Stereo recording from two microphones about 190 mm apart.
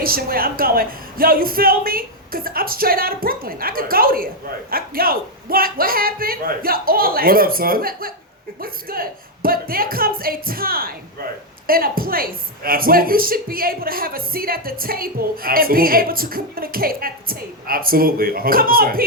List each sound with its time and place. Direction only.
0.0 s a woman's voice: 50° right (ahead or behind)